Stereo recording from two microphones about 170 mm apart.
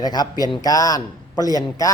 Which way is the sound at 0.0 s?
25° left (ahead or behind).